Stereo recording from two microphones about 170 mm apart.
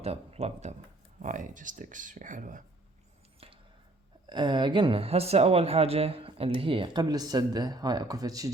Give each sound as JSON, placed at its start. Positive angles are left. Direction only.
{"t": 0.0, "sound": "speech", "side_deg": -35}
{"t": 3.4, "sound": "a sound", "side_deg": -35}
{"t": 4.3, "sound": "speech", "side_deg": -25}